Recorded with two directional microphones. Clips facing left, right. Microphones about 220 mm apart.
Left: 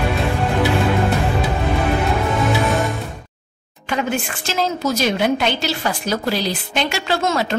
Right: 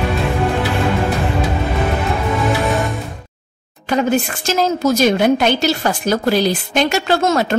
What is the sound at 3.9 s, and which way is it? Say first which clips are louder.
A woman's voice: right 6 dB; 40° right (ahead or behind).